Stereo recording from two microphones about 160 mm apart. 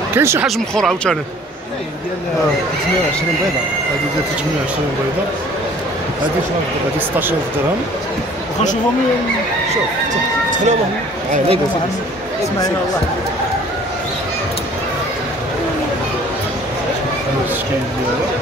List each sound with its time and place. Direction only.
0.1 s speech: 15° right (ahead or behind)
0.7 s speech: 5° left (ahead or behind)